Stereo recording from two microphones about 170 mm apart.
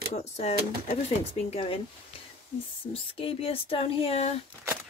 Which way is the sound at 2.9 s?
35° left (ahead or behind).